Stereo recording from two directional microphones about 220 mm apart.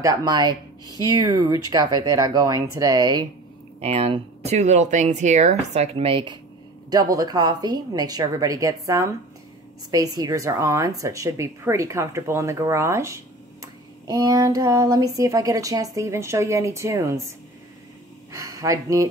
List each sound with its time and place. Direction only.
0.0 s speech: 15° right (ahead or behind)
18.3 s speech: 15° right (ahead or behind)